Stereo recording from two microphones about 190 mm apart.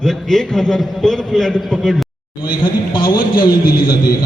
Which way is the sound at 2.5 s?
25° left (ahead or behind).